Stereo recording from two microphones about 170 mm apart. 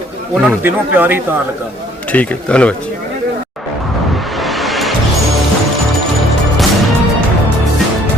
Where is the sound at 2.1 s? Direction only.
5° left (ahead or behind).